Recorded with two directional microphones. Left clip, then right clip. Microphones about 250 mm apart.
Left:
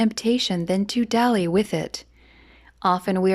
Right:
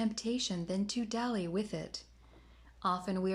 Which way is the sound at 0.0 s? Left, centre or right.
Left.